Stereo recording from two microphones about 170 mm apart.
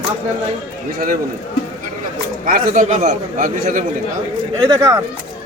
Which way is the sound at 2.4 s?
50° right (ahead or behind).